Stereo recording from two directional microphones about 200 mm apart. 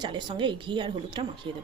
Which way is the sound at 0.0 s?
20° right (ahead or behind).